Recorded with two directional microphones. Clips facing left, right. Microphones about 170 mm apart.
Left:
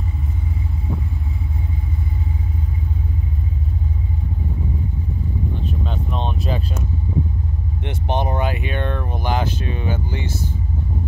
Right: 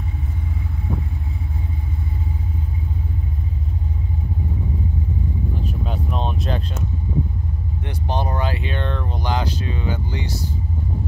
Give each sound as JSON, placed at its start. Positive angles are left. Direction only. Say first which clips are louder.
{"t": 5.9, "sound": "vehicle", "louder": "right 2 dB", "side_deg": -5}
{"t": 7.8, "sound": "vehicle", "louder": "left 3 dB", "side_deg": 20}